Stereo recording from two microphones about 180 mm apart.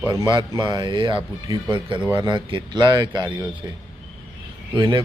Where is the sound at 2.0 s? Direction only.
15° right (ahead or behind).